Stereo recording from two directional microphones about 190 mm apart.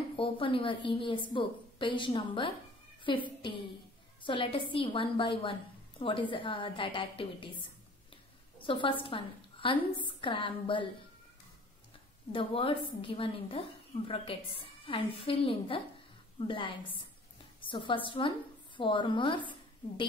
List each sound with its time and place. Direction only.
0.1 s a woman's voice: 30° left (ahead or behind)
8.1 s a sound: 25° left (ahead or behind)
9.9 s a woman's voice: 25° left (ahead or behind)
12.3 s a woman's voice: 25° left (ahead or behind)